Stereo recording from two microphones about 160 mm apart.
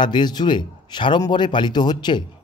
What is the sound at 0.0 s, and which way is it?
A man's voice, 30° left (ahead or behind).